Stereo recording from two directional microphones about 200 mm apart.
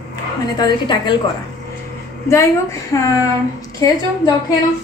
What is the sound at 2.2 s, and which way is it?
Speech, 15° left (ahead or behind).